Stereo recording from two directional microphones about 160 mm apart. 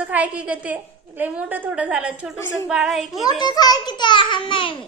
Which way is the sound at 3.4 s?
25° left (ahead or behind).